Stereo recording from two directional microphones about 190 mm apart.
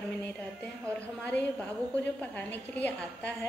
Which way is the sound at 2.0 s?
10° left (ahead or behind).